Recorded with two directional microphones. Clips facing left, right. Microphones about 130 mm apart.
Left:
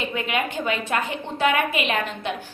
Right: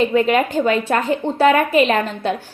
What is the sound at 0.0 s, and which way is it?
A woman's voice, 35° right (ahead or behind).